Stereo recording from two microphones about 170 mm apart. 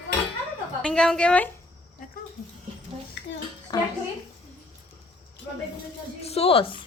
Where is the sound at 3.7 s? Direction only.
25° left (ahead or behind).